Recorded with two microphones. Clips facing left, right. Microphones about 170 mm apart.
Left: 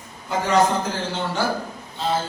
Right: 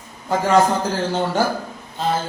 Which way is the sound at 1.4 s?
45° right (ahead or behind).